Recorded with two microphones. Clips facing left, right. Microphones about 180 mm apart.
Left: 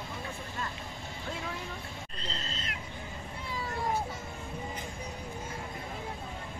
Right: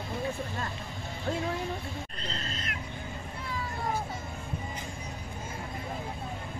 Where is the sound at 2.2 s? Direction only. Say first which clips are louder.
Even; 30° left (ahead or behind).